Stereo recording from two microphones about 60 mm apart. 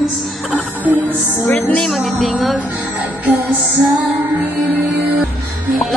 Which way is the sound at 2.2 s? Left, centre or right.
Centre.